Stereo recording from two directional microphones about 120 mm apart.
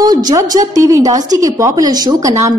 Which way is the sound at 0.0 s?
35° right (ahead or behind).